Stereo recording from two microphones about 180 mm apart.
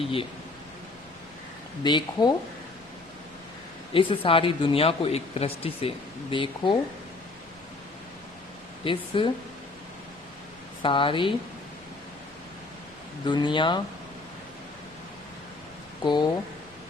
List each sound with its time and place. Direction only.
0.0 s speech: 30° left (ahead or behind)
1.8 s speech: 25° left (ahead or behind)
3.9 s speech: 30° left (ahead or behind)
8.8 s speech: 30° left (ahead or behind)
10.8 s speech: 30° left (ahead or behind)
13.2 s speech: 25° left (ahead or behind)